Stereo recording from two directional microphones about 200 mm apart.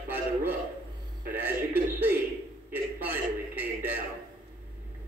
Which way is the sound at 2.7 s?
10° right (ahead or behind).